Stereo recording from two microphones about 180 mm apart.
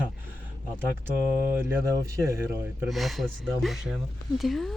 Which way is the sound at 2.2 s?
15° right (ahead or behind).